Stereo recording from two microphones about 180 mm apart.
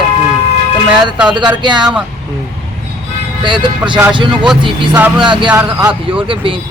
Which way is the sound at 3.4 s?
25° right (ahead or behind).